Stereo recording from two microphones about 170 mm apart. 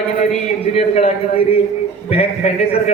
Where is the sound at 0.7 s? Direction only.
35° left (ahead or behind).